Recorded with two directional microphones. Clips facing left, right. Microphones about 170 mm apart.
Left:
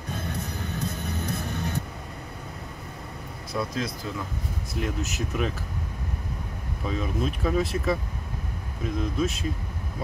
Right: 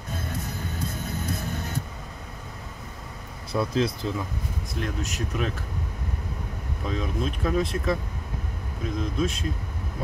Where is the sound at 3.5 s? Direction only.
30° right (ahead or behind).